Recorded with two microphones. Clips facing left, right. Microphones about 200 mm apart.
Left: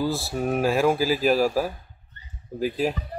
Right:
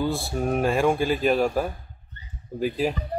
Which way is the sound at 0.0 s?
Centre (ahead or behind).